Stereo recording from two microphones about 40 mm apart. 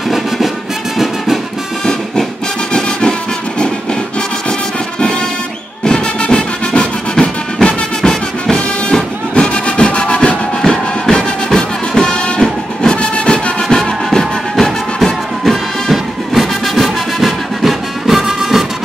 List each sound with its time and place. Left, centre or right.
0.9 s music: centre
2.7 s music: left
5.9 s music: left
9.3 s music: left; by 15.0 s centre
15.4 s music: centre